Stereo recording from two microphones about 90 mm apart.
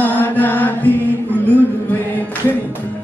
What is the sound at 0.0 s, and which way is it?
Mantra, 20° left (ahead or behind).